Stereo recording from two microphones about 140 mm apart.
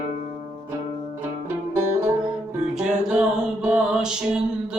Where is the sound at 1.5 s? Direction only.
15° right (ahead or behind).